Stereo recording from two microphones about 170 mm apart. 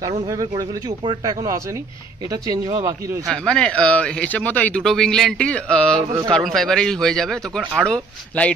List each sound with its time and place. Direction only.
0.2 s speech: 25° right (ahead or behind)
3.3 s speech: 5° left (ahead or behind)